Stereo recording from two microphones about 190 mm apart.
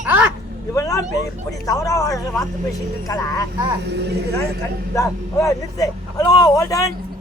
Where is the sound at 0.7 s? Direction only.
20° left (ahead or behind).